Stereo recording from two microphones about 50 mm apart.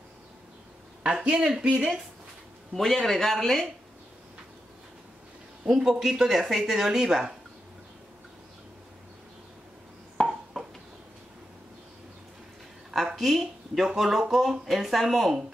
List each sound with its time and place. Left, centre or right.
1.3 s speech: centre
2.7 s speech: centre
5.7 s speech: centre
10.2 s a sound: centre
12.9 s a sound: centre
13.9 s speech: centre